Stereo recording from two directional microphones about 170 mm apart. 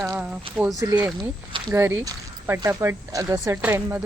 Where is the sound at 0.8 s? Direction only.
20° right (ahead or behind).